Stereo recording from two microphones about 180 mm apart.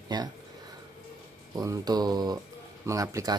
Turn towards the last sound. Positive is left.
turn(degrees=-20)  # may be behind; listen again after turning